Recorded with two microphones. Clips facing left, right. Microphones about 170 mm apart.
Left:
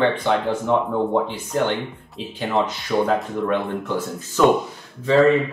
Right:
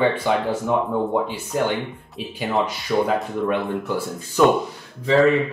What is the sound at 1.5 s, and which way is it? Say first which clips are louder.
Speech: left 1 dB; 10° right (ahead or behind).